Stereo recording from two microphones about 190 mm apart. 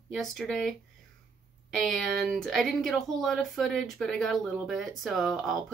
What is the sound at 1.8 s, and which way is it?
Speech, centre (ahead or behind).